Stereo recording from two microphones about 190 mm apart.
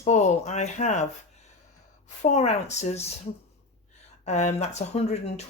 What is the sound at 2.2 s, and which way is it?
Speech, 35° left (ahead or behind).